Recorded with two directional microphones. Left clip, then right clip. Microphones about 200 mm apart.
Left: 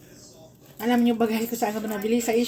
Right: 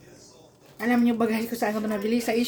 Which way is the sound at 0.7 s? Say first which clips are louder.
Left 1 dB; 5° right (ahead or behind).